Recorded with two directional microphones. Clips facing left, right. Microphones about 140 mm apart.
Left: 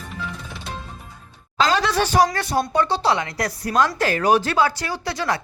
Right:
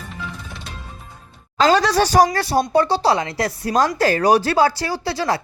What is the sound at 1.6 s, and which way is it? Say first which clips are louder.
Speech: right 4 dB; 45° right (ahead or behind).